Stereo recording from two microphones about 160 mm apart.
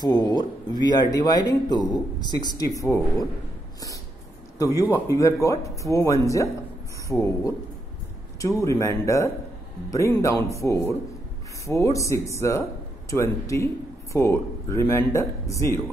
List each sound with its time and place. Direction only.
0.0 s speech: 25° left (ahead or behind)
4.6 s speech: 20° left (ahead or behind)